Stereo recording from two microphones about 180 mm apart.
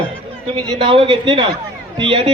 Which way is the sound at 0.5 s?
30° right (ahead or behind).